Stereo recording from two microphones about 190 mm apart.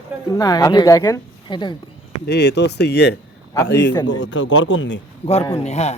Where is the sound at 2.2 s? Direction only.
60° left (ahead or behind).